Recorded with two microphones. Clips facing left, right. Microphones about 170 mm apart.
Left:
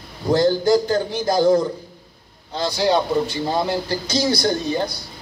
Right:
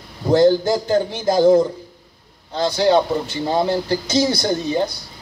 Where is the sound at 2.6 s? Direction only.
20° right (ahead or behind).